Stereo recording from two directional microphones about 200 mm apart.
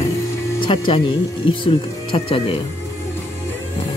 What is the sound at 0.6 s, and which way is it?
Speech, 25° left (ahead or behind).